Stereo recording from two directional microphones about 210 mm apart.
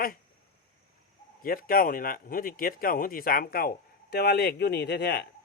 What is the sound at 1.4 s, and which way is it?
Speech, 45° left (ahead or behind).